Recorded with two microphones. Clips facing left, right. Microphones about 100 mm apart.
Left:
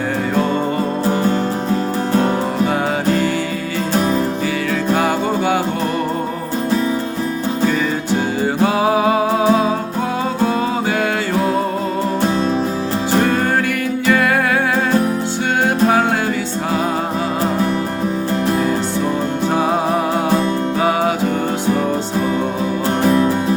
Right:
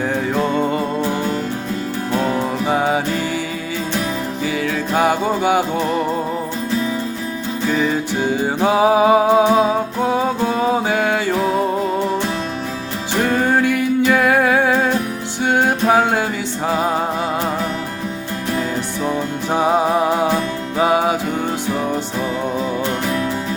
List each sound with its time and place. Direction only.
4.9 s music: 15° right (ahead or behind)
8.6 s music: 15° right (ahead or behind)
13.4 s music: 15° right (ahead or behind)
23.0 s music: 35° left (ahead or behind)